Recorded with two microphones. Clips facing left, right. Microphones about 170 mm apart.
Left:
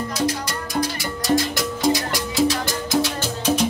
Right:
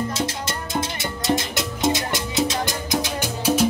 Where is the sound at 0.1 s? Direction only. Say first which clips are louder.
Left 3 dB; 25° right (ahead or behind).